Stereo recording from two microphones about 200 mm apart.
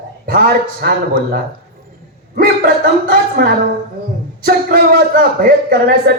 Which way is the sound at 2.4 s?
45° right (ahead or behind).